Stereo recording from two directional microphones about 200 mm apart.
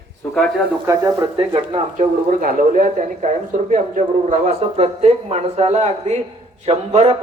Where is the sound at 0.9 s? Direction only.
15° right (ahead or behind).